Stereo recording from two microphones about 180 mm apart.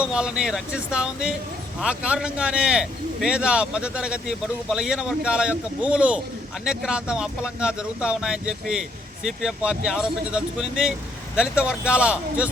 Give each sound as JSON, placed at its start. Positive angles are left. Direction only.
{"t": 0.0, "sound": "speech", "side_deg": -5}